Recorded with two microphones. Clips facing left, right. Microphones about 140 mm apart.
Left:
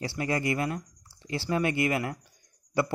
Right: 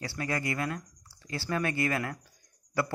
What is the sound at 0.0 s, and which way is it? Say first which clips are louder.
Speech: left 4 dB; 25° left (ahead or behind).